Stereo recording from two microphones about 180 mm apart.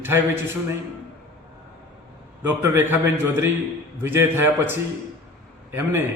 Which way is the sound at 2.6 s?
10° right (ahead or behind).